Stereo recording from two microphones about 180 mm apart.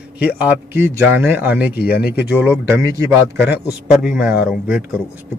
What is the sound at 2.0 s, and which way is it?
Speech, 65° left (ahead or behind).